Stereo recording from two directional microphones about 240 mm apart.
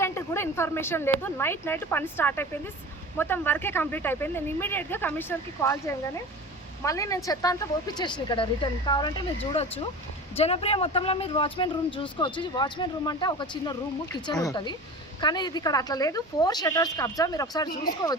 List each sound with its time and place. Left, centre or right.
0.0 s speech: centre
6.8 s speech: centre